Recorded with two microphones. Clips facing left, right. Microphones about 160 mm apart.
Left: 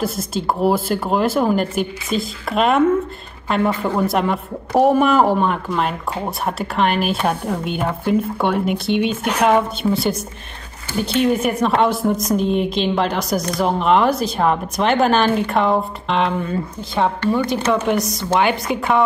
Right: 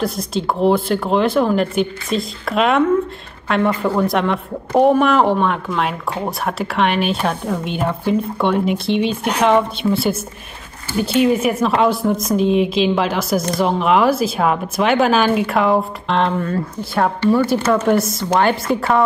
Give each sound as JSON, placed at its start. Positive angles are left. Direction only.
{"t": 0.0, "sound": "speech", "side_deg": 0}
{"t": 18.7, "sound": "a woman's voice", "side_deg": -40}